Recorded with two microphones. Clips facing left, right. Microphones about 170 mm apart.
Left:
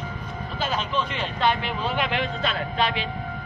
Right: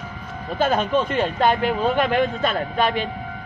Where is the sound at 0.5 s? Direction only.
50° right (ahead or behind).